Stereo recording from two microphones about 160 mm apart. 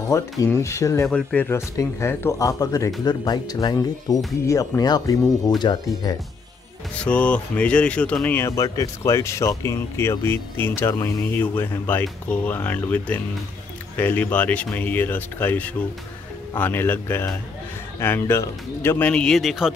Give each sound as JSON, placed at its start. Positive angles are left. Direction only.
{"t": 0.1, "sound": "speech", "side_deg": 20}
{"t": 1.0, "sound": "speech", "side_deg": 5}
{"t": 7.1, "sound": "speech", "side_deg": 10}